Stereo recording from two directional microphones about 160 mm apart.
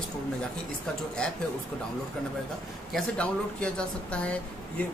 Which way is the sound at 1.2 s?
5° left (ahead or behind).